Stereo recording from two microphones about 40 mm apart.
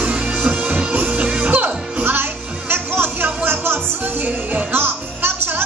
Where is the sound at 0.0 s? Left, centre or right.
Right.